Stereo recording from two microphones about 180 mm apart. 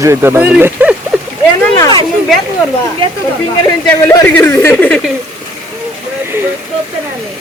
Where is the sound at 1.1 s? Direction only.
5° right (ahead or behind).